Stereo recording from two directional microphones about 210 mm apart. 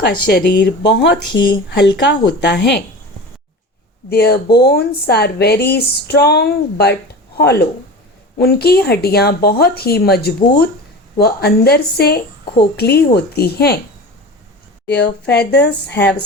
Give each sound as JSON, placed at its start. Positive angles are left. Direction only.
{"t": 0.0, "sound": "speech", "side_deg": 50}
{"t": 4.1, "sound": "speech", "side_deg": 50}
{"t": 14.8, "sound": "speech", "side_deg": 55}